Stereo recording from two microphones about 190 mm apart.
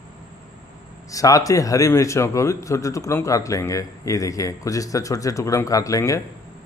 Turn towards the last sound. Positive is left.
turn(degrees=15)  # may be behind; listen again after turning